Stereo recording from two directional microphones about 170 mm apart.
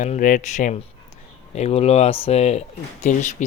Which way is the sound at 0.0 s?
45° left (ahead or behind).